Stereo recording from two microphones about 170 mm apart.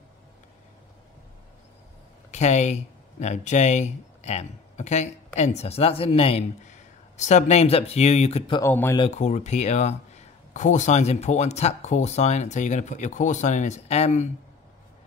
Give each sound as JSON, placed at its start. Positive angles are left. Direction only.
{"t": 2.3, "sound": "speech", "side_deg": 40}
{"t": 8.6, "sound": "speech", "side_deg": 15}
{"t": 9.1, "sound": "speech", "side_deg": 45}